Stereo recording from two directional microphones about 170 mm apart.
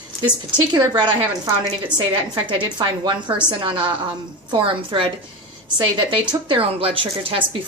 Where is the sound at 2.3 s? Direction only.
30° right (ahead or behind).